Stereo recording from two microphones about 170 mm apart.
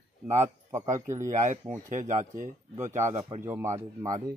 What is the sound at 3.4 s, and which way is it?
Speech, 15° right (ahead or behind).